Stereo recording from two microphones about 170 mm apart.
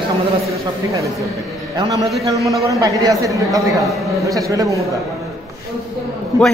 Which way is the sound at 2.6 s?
20° right (ahead or behind).